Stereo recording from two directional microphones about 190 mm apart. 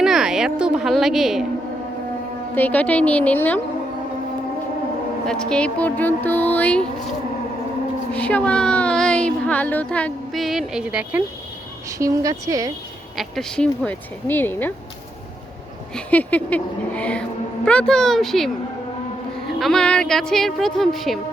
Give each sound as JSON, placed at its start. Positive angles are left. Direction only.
{"t": 0.0, "sound": "a woman's voice", "side_deg": -5}
{"t": 2.6, "sound": "speech", "side_deg": 10}
{"t": 5.2, "sound": "speech", "side_deg": 5}
{"t": 8.1, "sound": "speech", "side_deg": 5}
{"t": 11.9, "sound": "speech", "side_deg": -15}
{"t": 13.1, "sound": "speech", "side_deg": 0}
{"t": 16.0, "sound": "speech", "side_deg": 10}
{"t": 19.5, "sound": "speech", "side_deg": 0}